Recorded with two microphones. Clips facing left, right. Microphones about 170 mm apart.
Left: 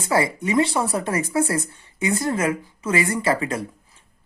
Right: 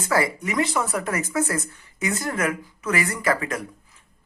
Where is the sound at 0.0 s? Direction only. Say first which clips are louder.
Left 2 dB; 25° left (ahead or behind).